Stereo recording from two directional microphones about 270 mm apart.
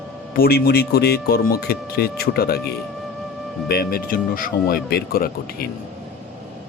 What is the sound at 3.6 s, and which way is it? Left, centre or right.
Speech, left.